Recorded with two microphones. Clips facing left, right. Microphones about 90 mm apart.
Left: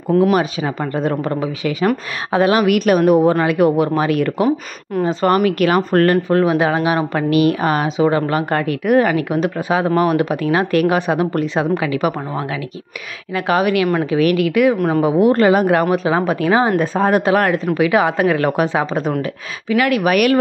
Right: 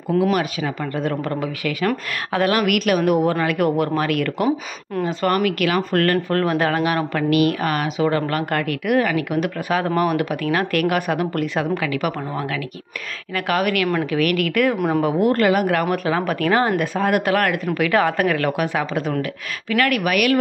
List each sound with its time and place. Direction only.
0.2 s speech: 30° left (ahead or behind)
1.1 s speech: 20° left (ahead or behind)
6.2 s speech: 15° left (ahead or behind)
7.2 s speech: 30° left (ahead or behind)
8.8 s speech: 35° left (ahead or behind); by 16.7 s 15° left (ahead or behind)
16.7 s speech: 30° left (ahead or behind)
19.7 s speech: 20° left (ahead or behind)
20.1 s speech: 35° left (ahead or behind)